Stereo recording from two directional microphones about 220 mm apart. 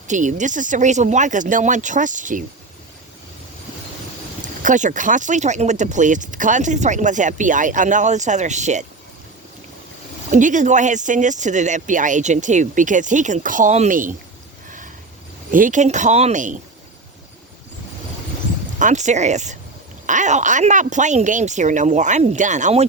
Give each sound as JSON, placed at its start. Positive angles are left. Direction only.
{"t": 0.1, "sound": "speech", "side_deg": -35}
{"t": 4.6, "sound": "speech", "side_deg": -35}
{"t": 10.3, "sound": "speech", "side_deg": -35}
{"t": 15.5, "sound": "speech", "side_deg": -35}
{"t": 18.8, "sound": "speech", "side_deg": -35}